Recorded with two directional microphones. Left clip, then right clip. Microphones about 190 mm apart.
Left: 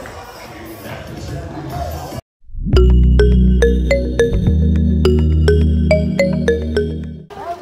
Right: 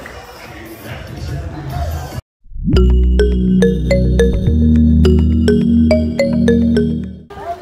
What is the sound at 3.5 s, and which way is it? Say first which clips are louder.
Music: right 1 dB; 30° left (ahead or behind).